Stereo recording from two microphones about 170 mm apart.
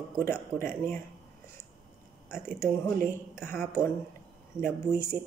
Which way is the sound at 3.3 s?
15° left (ahead or behind).